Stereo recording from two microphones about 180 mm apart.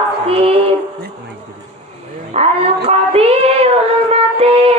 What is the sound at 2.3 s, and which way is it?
Child singing, 35° right (ahead or behind).